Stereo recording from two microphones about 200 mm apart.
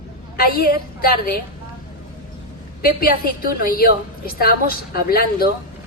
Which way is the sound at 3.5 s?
45° left (ahead or behind).